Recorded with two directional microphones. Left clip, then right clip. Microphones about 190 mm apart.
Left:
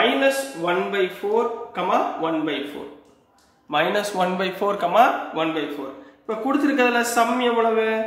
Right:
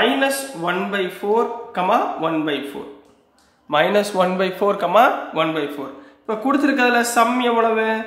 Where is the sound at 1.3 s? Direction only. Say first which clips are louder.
Right 7 dB; 40° right (ahead or behind).